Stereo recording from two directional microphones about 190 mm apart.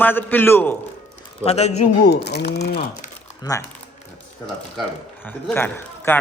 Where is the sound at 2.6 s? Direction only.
35° left (ahead or behind).